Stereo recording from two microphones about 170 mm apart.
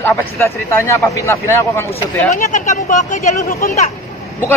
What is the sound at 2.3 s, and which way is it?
Speech, 45° left (ahead or behind).